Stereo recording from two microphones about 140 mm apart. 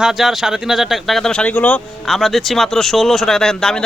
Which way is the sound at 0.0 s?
5° right (ahead or behind).